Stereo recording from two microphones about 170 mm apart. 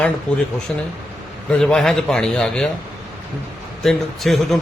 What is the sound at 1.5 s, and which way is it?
A man's voice, 5° left (ahead or behind).